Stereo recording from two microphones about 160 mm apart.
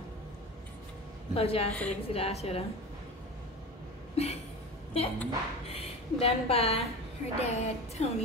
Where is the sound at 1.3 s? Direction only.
35° left (ahead or behind).